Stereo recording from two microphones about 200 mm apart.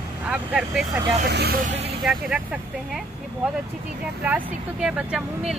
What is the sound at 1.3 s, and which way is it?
Speech, 55° right (ahead or behind).